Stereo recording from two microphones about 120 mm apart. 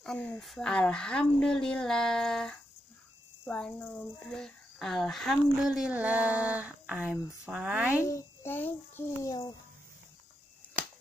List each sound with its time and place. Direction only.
0.0 s speech: 10° left (ahead or behind); by 8.0 s 15° right (ahead or behind)
8.0 s a child's voice: 25° left (ahead or behind)